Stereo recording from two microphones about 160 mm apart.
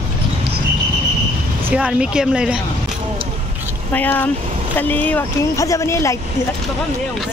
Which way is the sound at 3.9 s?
10° left (ahead or behind).